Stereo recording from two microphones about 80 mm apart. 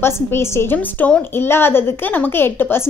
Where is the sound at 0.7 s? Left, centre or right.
Centre.